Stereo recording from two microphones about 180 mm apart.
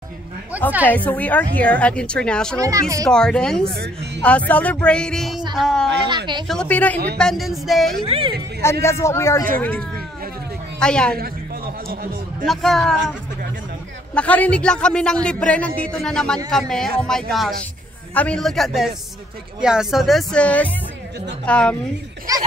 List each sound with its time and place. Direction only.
0.5 s a woman's voice: 10° right (ahead or behind)
0.8 s a woman's voice: 10° left (ahead or behind)
2.6 s speech: 20° right (ahead or behind)
3.1 s speech: 5° left (ahead or behind)
3.7 s a woman's voice: 60° right (ahead or behind)
4.2 s a woman's voice: 10° left (ahead or behind)
6.0 s speech: 25° right (ahead or behind)
6.4 s a woman's voice: 5° left (ahead or behind)
8.1 s speech: 30° right (ahead or behind)
8.8 s a woman's voice: 15° left (ahead or behind)
11.1 s a man's voice: 55° right (ahead or behind)
12.4 s speech: centre (ahead or behind)
14.1 s a woman's voice: 10° left (ahead or behind)
22.3 s speech: 20° right (ahead or behind)